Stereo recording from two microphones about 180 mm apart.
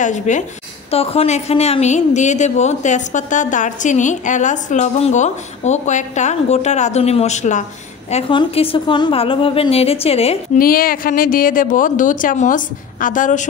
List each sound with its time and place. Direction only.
0.0 s speech: 45° left (ahead or behind)
0.8 s a woman's voice: 35° left (ahead or behind)
8.1 s a woman's voice: 30° left (ahead or behind)
10.6 s speech: 55° left (ahead or behind)